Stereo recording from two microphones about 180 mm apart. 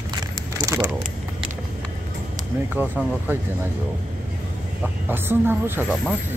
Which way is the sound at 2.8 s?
10° right (ahead or behind).